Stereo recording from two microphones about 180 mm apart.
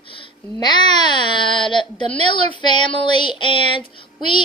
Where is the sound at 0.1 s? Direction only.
25° left (ahead or behind).